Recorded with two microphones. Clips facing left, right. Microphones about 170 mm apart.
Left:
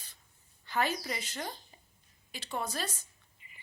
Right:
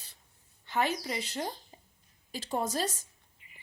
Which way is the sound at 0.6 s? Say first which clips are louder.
Right 2 dB; 20° right (ahead or behind).